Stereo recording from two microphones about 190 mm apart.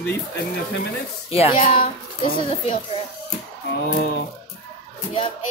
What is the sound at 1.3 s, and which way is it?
Speech, 30° left (ahead or behind).